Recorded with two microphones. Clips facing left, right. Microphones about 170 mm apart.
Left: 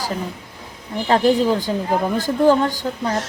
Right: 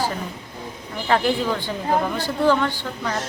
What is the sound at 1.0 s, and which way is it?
A woman's voice, 35° left (ahead or behind).